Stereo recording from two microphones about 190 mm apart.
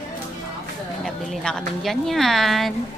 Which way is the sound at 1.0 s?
5° left (ahead or behind).